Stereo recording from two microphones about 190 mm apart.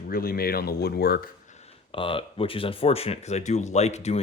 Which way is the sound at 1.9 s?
30° left (ahead or behind).